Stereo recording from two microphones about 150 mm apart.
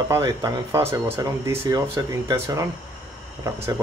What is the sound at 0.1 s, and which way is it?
Speech, 20° right (ahead or behind).